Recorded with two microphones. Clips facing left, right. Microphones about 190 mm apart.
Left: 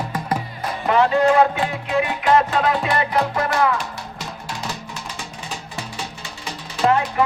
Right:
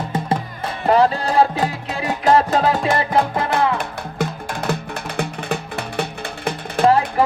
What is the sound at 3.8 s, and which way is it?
Music, 55° right (ahead or behind).